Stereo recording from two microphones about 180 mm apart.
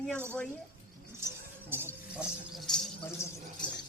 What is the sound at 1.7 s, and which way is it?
Music, 10° right (ahead or behind).